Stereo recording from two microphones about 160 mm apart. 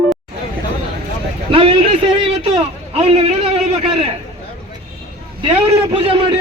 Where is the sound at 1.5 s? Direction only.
35° right (ahead or behind).